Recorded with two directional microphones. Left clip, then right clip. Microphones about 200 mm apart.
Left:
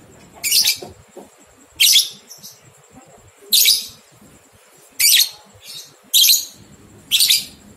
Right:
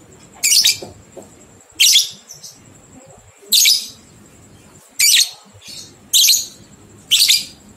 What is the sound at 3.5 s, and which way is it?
Bird, 30° right (ahead or behind).